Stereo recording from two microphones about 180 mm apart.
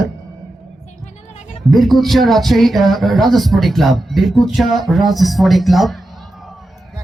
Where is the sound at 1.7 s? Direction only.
Centre (ahead or behind).